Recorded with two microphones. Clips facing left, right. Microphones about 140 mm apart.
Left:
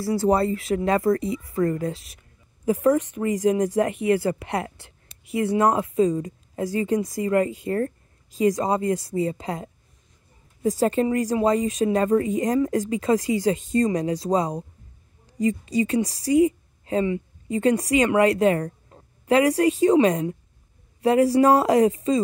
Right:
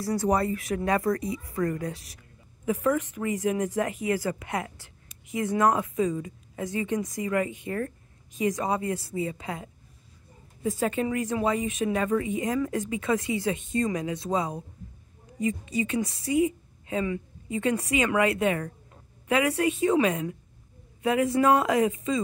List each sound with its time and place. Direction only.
0.2 s a woman's voice: 30° left (ahead or behind)